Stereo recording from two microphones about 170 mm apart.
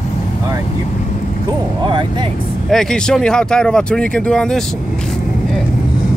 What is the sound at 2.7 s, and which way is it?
Speech, 5° left (ahead or behind).